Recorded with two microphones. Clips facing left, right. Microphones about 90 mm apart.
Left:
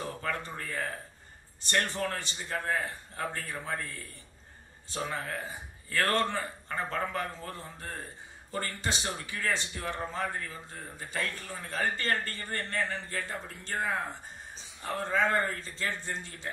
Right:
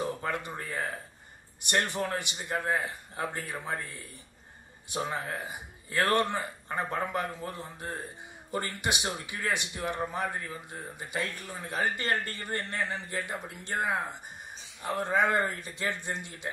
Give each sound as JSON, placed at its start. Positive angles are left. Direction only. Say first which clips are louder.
{"t": 0.0, "sound": "a man's voice", "louder": "right 3 dB", "side_deg": -20}